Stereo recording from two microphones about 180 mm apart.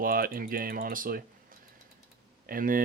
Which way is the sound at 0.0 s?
55° right (ahead or behind).